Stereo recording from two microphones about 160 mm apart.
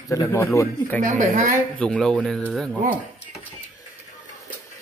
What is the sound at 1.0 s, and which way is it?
Speech, 50° right (ahead or behind).